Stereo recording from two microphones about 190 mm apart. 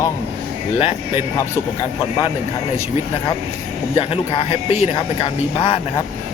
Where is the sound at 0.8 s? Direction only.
30° left (ahead or behind).